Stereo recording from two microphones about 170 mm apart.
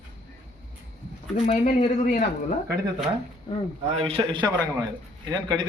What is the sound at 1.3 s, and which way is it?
Speech, 40° left (ahead or behind).